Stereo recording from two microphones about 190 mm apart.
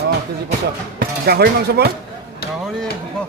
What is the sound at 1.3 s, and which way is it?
Speech, 55° right (ahead or behind).